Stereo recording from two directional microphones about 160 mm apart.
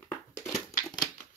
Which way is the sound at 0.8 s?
25° left (ahead or behind).